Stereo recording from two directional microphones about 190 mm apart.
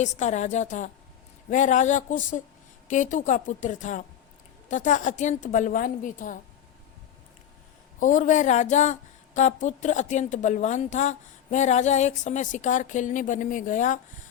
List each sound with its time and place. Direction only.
0.0 s a woman's voice: 40° left (ahead or behind)
7.9 s a woman's voice: 40° left (ahead or behind)